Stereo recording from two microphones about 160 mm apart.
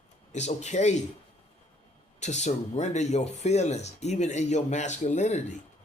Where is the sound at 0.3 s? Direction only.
45° left (ahead or behind).